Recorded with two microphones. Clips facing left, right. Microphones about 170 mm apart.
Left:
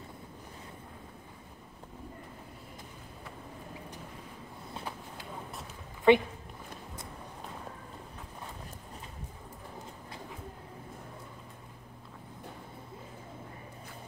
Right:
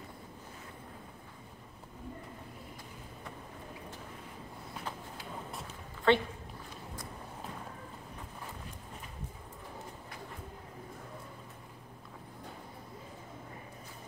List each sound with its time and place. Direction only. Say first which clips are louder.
6.1 s speech: left 5 dB; 15° left (ahead or behind)